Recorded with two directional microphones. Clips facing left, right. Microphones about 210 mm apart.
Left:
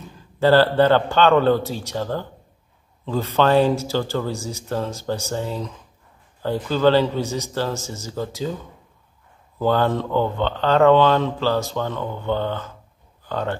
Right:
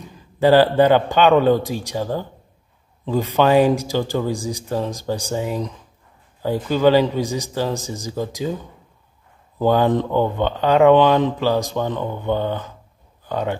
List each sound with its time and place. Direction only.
0.0 s speech: 15° right (ahead or behind)
9.6 s speech: 15° right (ahead or behind)